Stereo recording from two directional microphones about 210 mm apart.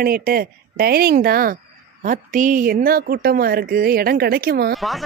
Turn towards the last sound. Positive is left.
turn(degrees=-45)  # may be behind; listen again after turning